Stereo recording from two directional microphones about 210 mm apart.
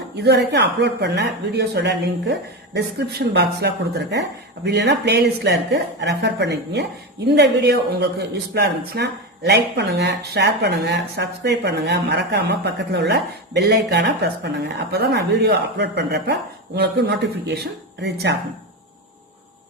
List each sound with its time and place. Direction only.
0.2 s a man's voice: 55° right (ahead or behind)